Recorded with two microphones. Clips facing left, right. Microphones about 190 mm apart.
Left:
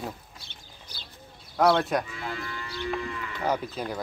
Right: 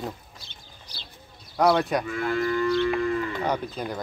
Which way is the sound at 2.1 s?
55° right (ahead or behind).